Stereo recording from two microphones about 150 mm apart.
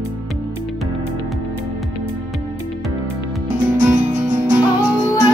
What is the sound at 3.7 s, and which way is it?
Music, 15° right (ahead or behind).